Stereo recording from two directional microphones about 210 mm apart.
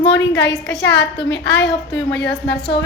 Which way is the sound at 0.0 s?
55° left (ahead or behind).